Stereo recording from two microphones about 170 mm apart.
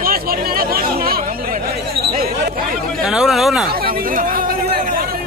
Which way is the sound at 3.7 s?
60° right (ahead or behind).